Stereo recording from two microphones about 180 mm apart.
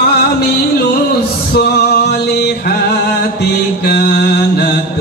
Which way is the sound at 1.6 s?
65° left (ahead or behind).